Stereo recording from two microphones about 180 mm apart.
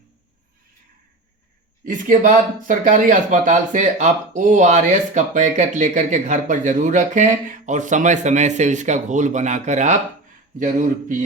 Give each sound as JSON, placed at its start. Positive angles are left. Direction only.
{"t": 1.8, "sound": "speech", "side_deg": -45}